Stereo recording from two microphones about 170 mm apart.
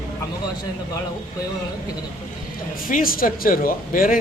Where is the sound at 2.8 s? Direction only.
55° left (ahead or behind).